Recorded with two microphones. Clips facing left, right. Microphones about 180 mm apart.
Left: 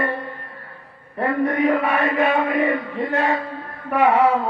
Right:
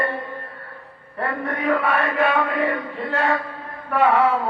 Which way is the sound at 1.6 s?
15° left (ahead or behind).